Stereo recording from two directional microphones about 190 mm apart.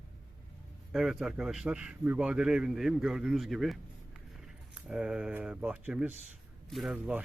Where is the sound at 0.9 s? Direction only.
Centre (ahead or behind).